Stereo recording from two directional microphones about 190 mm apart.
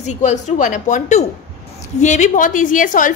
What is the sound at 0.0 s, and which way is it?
A woman's voice, 40° left (ahead or behind).